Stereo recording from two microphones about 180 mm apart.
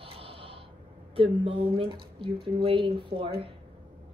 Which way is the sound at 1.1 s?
30° right (ahead or behind).